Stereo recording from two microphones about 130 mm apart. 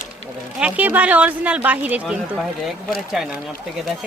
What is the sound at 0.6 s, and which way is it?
A woman's voice, 10° right (ahead or behind).